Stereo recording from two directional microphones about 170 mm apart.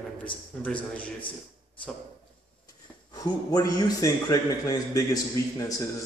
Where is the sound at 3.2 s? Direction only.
20° left (ahead or behind).